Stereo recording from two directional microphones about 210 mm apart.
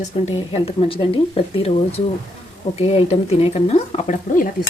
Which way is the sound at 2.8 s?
25° left (ahead or behind).